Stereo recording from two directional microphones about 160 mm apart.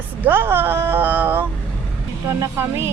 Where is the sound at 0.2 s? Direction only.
15° right (ahead or behind).